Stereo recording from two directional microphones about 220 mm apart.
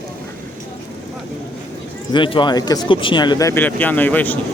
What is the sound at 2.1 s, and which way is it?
Speech, 20° left (ahead or behind).